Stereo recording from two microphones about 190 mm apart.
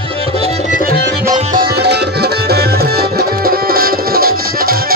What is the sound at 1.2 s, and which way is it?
Music, 45° right (ahead or behind).